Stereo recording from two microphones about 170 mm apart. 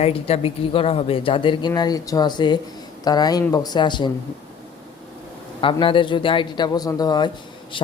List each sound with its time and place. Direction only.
0.0 s speech: 35° left (ahead or behind)
5.8 s speech: 30° left (ahead or behind)